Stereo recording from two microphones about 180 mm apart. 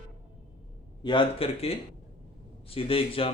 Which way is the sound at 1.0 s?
25° left (ahead or behind).